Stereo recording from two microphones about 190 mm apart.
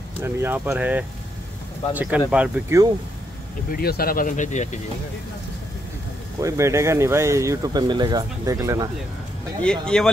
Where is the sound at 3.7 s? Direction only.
55° left (ahead or behind).